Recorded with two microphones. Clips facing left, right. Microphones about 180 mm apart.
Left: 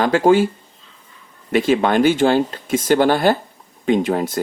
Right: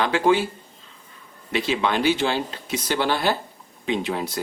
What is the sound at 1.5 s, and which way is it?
Speech, 50° left (ahead or behind).